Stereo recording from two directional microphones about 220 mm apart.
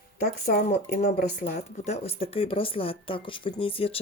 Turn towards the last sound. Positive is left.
turn(degrees=25)  # may be behind; listen again after turning